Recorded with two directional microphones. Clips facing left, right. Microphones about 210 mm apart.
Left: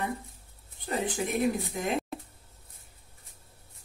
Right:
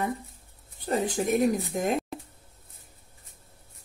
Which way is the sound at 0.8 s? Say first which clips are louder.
Right 4 dB; 40° right (ahead or behind).